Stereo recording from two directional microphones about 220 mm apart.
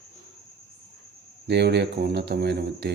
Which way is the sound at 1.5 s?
50° right (ahead or behind).